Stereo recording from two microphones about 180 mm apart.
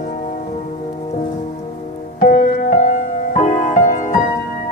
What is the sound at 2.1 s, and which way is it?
Music, 50° left (ahead or behind).